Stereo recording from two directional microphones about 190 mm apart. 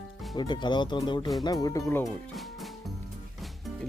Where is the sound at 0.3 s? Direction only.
25° left (ahead or behind).